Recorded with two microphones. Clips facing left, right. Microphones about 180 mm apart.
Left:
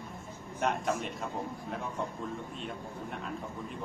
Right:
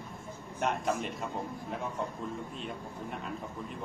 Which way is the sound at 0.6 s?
Centre (ahead or behind).